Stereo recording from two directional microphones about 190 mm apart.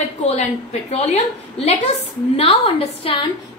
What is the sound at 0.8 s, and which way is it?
A woman's voice, 35° left (ahead or behind).